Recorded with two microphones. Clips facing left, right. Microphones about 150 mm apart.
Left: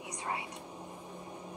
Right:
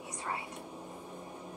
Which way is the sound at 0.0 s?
20° left (ahead or behind).